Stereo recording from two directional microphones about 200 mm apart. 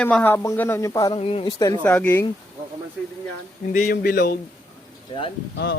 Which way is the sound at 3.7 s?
45° left (ahead or behind).